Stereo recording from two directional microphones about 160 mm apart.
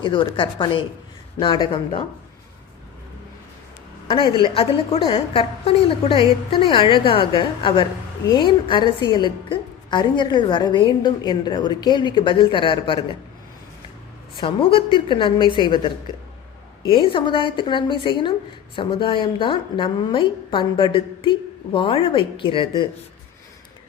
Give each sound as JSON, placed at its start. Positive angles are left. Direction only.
{"t": 0.0, "sound": "a woman's voice", "side_deg": 30}
{"t": 4.1, "sound": "a woman's voice", "side_deg": 30}
{"t": 14.3, "sound": "a woman's voice", "side_deg": 35}